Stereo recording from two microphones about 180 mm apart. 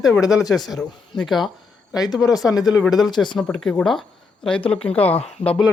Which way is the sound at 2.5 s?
20° left (ahead or behind).